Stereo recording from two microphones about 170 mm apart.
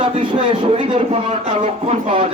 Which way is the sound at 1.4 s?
45° right (ahead or behind).